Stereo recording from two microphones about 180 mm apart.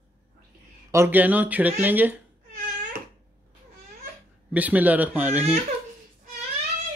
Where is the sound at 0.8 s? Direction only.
15° right (ahead or behind).